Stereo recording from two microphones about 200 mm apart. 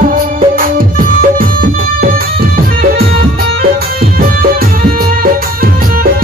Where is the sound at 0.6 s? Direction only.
45° right (ahead or behind).